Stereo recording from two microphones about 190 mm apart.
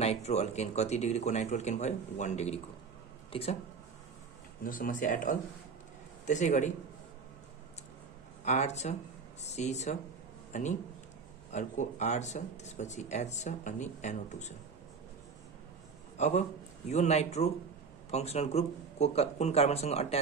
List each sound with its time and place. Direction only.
0.0 s speech: 35° left (ahead or behind)
4.6 s speech: 45° left (ahead or behind)
8.5 s speech: 35° left (ahead or behind)
16.2 s speech: 35° left (ahead or behind)